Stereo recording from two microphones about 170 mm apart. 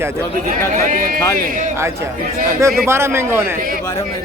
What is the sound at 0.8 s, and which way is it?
Speech, 55° right (ahead or behind).